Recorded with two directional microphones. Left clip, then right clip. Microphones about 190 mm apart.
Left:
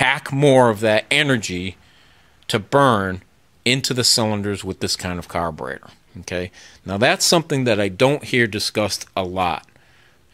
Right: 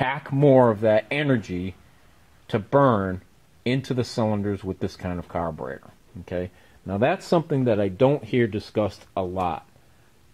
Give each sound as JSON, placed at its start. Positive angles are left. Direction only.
{"t": 0.0, "sound": "speech", "side_deg": 15}